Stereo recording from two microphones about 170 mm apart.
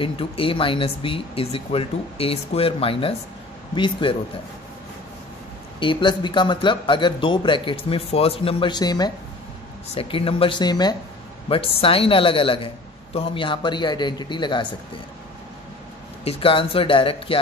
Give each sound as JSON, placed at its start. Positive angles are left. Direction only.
{"t": 0.0, "sound": "a man's voice", "side_deg": 30}
{"t": 5.8, "sound": "a man's voice", "side_deg": 30}
{"t": 16.3, "sound": "a man's voice", "side_deg": 30}